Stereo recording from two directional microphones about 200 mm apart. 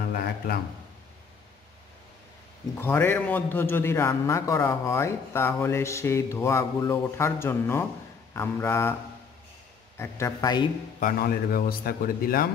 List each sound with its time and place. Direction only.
2.8 s a man's voice: 10° left (ahead or behind)
9.9 s a man's voice: 15° left (ahead or behind)
11.0 s speech: 45° left (ahead or behind)